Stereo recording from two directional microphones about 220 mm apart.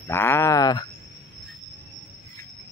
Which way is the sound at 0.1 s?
10° left (ahead or behind).